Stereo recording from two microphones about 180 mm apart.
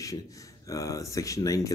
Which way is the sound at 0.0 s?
20° left (ahead or behind).